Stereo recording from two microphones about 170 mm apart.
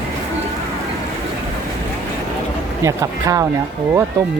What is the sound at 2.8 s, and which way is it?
Speech, 20° right (ahead or behind).